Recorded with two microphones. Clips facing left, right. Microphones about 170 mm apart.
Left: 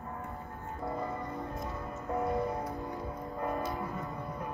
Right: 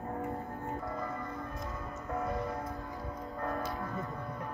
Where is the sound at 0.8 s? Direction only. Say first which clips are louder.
Left 2 dB; 20° left (ahead or behind).